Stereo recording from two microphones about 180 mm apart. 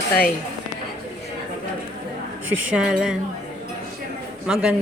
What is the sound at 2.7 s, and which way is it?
Speech, 5° right (ahead or behind).